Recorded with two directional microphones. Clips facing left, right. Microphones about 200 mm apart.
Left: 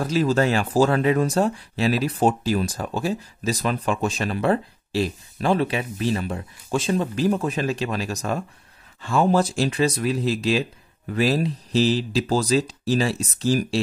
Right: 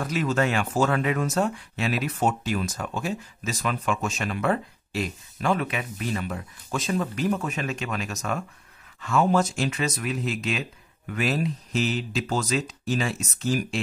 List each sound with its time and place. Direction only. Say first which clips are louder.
0.0 s speech: left 4 dB; 30° left (ahead or behind)